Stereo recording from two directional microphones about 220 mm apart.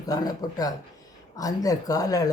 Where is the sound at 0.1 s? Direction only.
15° left (ahead or behind).